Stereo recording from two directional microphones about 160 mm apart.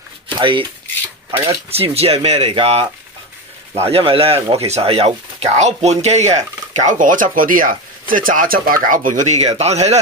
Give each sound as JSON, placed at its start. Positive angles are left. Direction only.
{"t": 0.3, "sound": "speech", "side_deg": -30}
{"t": 1.3, "sound": "mechanisms", "side_deg": -15}
{"t": 1.7, "sound": "speech", "side_deg": -40}